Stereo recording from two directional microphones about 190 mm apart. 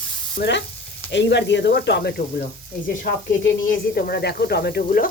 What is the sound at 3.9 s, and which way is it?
Stir, 55° left (ahead or behind).